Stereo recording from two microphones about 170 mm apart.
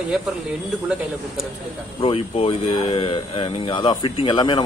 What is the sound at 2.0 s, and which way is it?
Speech, 35° left (ahead or behind).